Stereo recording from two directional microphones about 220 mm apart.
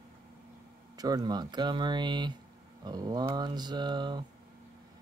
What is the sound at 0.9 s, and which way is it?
Speech, 15° right (ahead or behind).